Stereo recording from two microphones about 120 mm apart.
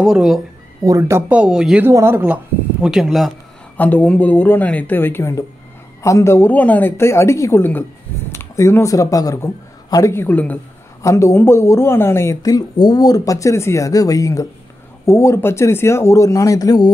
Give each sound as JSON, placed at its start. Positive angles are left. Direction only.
{"t": 0.0, "sound": "speech", "side_deg": -5}
{"t": 0.8, "sound": "speech", "side_deg": -25}
{"t": 1.3, "sound": "speech", "side_deg": -5}
{"t": 1.9, "sound": "speech", "side_deg": -20}
{"t": 3.7, "sound": "speech", "side_deg": 15}
{"t": 11.0, "sound": "speech", "side_deg": 25}